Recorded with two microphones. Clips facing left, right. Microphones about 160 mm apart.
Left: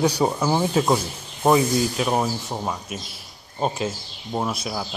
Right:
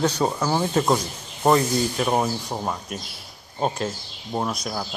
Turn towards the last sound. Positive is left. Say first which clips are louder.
# left 1 dB
turn(degrees=5)  # may be behind; listen again after turning